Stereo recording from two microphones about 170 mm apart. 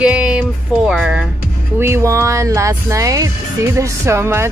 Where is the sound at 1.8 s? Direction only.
15° right (ahead or behind).